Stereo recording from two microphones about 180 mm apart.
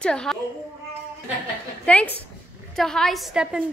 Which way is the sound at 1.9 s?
10° left (ahead or behind).